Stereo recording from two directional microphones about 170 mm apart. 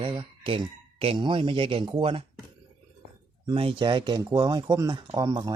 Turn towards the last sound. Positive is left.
turn(degrees=-20)  # may be behind; listen again after turning